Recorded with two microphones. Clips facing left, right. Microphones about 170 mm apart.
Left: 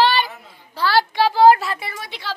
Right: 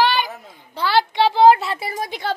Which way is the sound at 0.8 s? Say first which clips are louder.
Even; 20° right (ahead or behind).